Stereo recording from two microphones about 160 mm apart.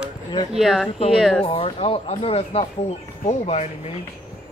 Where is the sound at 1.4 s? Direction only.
40° left (ahead or behind).